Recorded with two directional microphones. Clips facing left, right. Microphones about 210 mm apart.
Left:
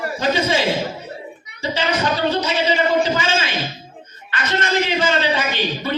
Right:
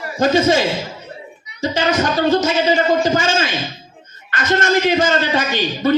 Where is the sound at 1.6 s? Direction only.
45° right (ahead or behind).